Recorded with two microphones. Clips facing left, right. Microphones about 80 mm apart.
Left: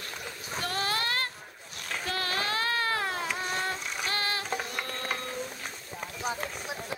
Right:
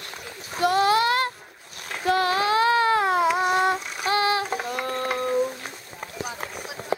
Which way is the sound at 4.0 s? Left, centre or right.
Centre.